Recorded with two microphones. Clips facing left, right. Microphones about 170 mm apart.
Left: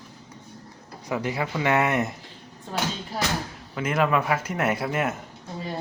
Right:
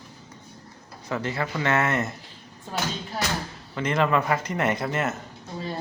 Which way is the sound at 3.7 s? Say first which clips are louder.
Even; 5° left (ahead or behind).